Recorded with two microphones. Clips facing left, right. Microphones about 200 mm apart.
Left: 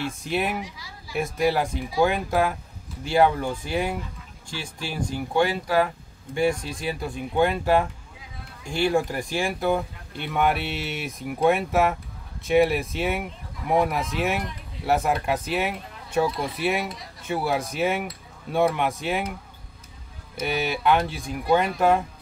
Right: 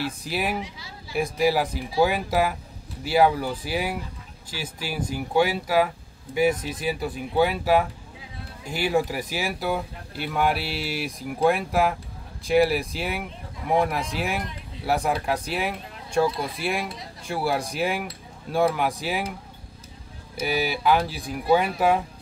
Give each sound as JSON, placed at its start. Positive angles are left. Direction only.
{"t": 0.2, "sound": "speech", "side_deg": 0}
{"t": 0.6, "sound": "speech", "side_deg": -25}
{"t": 1.1, "sound": "speech", "side_deg": 0}
{"t": 20.3, "sound": "speech", "side_deg": 0}